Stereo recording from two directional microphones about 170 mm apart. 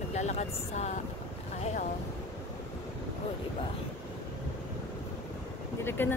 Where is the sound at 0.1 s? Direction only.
40° left (ahead or behind).